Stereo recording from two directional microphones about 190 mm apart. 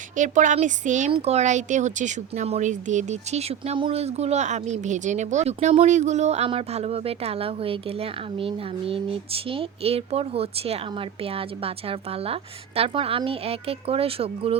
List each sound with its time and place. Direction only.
0.2 s speech: 40° right (ahead or behind)